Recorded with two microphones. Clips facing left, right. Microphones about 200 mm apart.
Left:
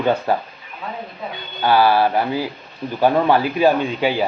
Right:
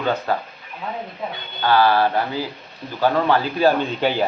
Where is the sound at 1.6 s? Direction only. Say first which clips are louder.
Left 2 dB; 15° left (ahead or behind).